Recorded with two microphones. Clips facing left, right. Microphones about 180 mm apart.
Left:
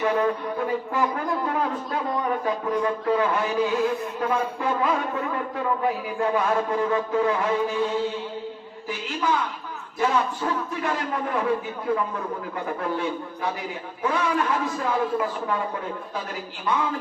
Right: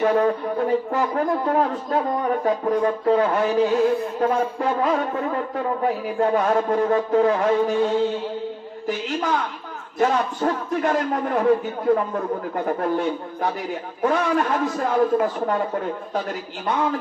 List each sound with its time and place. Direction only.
0.0 s speech: 40° right (ahead or behind)
10.0 s a man's voice: 45° right (ahead or behind)
16.7 s a man's voice: 45° right (ahead or behind)